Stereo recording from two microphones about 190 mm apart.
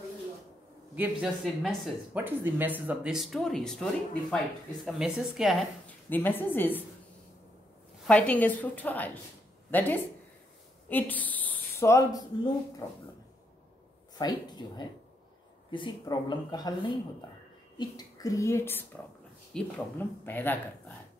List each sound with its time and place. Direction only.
0.9 s a woman's voice: 5° right (ahead or behind); by 6.8 s 10° left (ahead or behind)
8.1 s a woman's voice: 5° left (ahead or behind)
14.1 s a woman's voice: 20° left (ahead or behind)